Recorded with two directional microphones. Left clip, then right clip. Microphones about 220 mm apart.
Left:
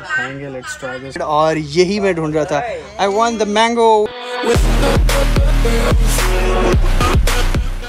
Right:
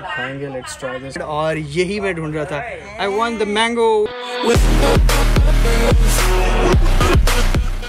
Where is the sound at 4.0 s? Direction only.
Centre (ahead or behind).